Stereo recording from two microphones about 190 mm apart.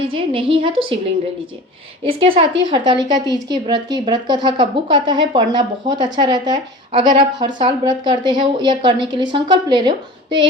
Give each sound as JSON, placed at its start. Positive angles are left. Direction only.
{"t": 0.1, "sound": "speech", "side_deg": -30}
{"t": 2.0, "sound": "speech", "side_deg": -30}